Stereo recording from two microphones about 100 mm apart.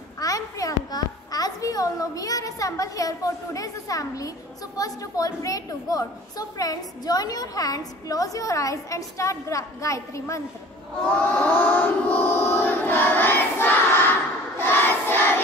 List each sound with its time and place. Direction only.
0.2 s a child's voice: 35° left (ahead or behind)
11.1 s chant: 15° left (ahead or behind)
14.6 s crowd: 20° left (ahead or behind)